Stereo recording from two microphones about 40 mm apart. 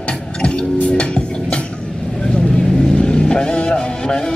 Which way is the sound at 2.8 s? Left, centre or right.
Centre.